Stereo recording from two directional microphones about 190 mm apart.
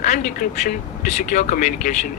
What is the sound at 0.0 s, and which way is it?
Speech, 40° left (ahead or behind).